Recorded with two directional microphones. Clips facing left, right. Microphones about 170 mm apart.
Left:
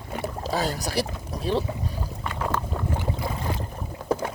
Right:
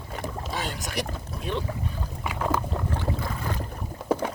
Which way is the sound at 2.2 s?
10° right (ahead or behind).